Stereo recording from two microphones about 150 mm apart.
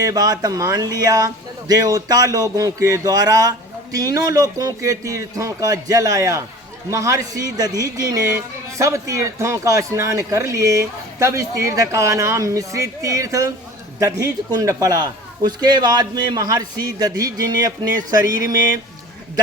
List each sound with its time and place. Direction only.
0.0 s speech: 25° right (ahead or behind)